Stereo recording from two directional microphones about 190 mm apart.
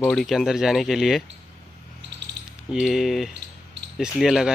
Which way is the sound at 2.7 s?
Centre (ahead or behind).